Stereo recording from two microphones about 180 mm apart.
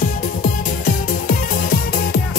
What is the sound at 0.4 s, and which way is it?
Music, 50° left (ahead or behind).